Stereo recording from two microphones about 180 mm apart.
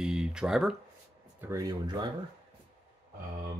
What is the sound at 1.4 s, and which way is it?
Speech, 15° right (ahead or behind).